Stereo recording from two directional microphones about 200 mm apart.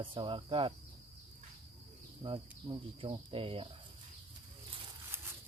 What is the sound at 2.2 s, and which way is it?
Speech, 25° right (ahead or behind).